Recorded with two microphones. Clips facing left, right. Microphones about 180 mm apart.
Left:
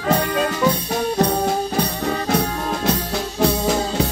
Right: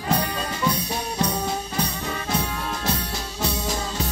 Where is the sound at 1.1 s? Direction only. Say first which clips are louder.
Left 6 dB; 50° left (ahead or behind).